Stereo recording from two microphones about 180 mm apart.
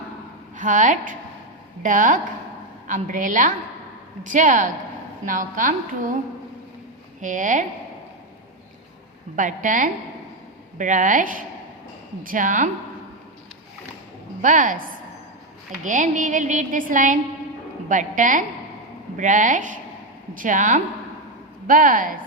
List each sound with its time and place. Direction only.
0.5 s a woman's voice: 45° right (ahead or behind)
7.2 s a woman's voice: 45° right (ahead or behind)
9.3 s a woman's voice: 45° right (ahead or behind)
14.4 s a woman's voice: 45° right (ahead or behind)
15.8 s a woman's voice: 45° right (ahead or behind)